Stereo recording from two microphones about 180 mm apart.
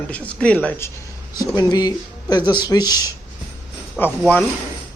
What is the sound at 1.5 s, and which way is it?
Speech, 20° left (ahead or behind).